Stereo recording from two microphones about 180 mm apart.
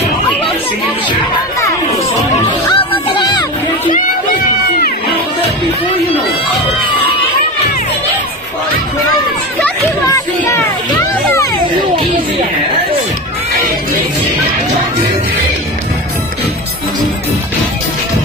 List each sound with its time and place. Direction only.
2.4 s music: 30° left (ahead or behind)
10.0 s children playing: 20° left (ahead or behind)